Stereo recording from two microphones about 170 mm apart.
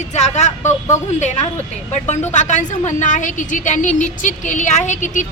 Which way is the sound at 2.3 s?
45° left (ahead or behind).